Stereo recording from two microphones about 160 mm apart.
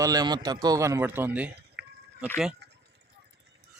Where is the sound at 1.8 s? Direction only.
90° right.